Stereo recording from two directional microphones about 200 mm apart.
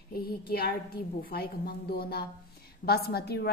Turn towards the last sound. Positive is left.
turn(degrees=55)  # may be behind; listen again after turning